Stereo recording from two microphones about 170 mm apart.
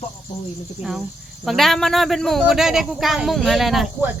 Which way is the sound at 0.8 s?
5° right (ahead or behind).